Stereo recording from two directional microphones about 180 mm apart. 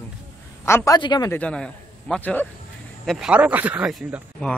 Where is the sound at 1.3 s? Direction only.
5° left (ahead or behind).